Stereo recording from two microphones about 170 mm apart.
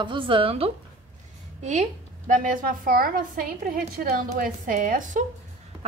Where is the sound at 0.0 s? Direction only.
30° right (ahead or behind).